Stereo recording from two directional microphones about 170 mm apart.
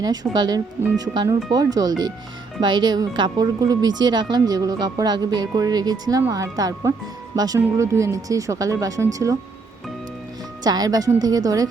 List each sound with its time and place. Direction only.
0.0 s speech: 25° right (ahead or behind)
10.6 s speech: 25° right (ahead or behind)